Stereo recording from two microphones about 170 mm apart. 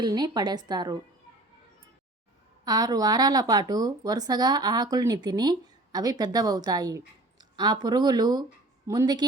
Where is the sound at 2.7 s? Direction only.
20° right (ahead or behind).